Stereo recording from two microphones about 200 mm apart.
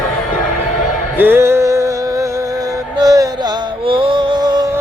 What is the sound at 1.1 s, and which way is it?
Music, 10° right (ahead or behind).